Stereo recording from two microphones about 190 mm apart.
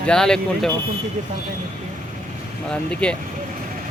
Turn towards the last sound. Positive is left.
turn(degrees=5)  # may be behind; listen again after turning